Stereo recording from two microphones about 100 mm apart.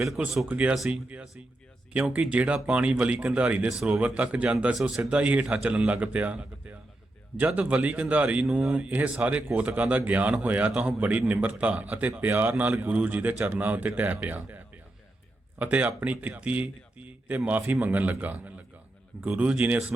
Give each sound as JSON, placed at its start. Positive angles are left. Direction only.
{"t": 0.4, "sound": "speech", "side_deg": -15}